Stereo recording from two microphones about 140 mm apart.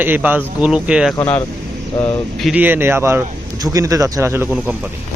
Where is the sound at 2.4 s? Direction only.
10° right (ahead or behind).